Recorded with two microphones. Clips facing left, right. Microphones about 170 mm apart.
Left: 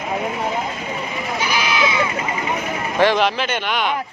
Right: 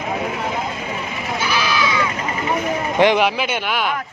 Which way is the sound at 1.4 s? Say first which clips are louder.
Even; 20° left (ahead or behind).